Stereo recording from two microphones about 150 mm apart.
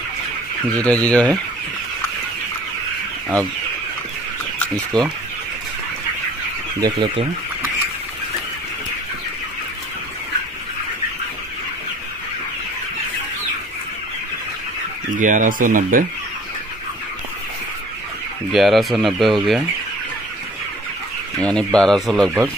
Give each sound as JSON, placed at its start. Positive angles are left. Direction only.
{"t": 0.7, "sound": "speech", "side_deg": 10}
{"t": 4.9, "sound": "speech", "side_deg": -30}
{"t": 6.8, "sound": "speech", "side_deg": -30}
{"t": 15.1, "sound": "speech", "side_deg": -60}
{"t": 18.5, "sound": "speech", "side_deg": 0}
{"t": 21.4, "sound": "speech", "side_deg": 5}